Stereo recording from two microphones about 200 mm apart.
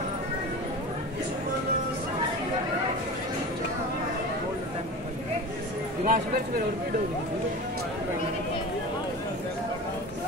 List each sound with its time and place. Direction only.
6.0 s speech: 45° right (ahead or behind)